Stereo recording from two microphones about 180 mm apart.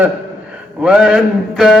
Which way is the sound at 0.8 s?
5° right (ahead or behind).